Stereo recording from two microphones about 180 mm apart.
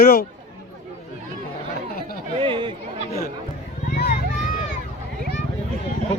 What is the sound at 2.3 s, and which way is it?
Chatter, 25° right (ahead or behind).